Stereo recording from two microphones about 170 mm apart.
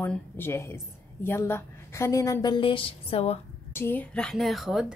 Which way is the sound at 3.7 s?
10° left (ahead or behind).